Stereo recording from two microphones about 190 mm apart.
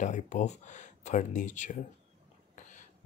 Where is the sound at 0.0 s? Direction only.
40° left (ahead or behind).